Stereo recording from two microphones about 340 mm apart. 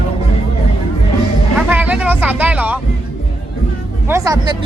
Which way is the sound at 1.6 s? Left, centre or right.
Centre.